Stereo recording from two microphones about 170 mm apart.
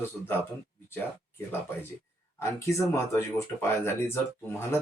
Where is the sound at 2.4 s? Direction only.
15° left (ahead or behind).